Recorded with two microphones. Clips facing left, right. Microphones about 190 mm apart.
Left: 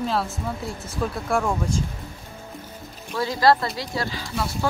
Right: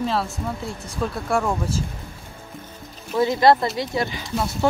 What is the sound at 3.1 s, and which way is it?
Speech, 20° right (ahead or behind).